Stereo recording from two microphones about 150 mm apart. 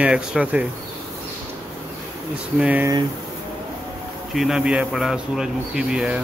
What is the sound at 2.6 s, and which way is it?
Speech, 10° right (ahead or behind).